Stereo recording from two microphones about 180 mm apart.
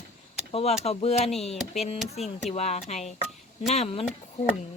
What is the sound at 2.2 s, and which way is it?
Speech, 35° left (ahead or behind).